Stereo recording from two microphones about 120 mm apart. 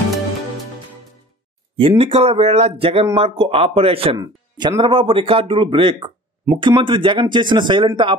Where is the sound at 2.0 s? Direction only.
55° right (ahead or behind).